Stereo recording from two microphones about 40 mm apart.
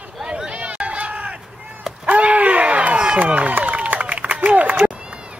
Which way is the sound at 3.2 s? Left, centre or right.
Right.